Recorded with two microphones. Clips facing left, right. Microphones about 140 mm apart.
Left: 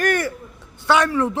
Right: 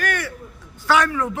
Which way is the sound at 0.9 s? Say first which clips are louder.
Left 2 dB; 25° left (ahead or behind).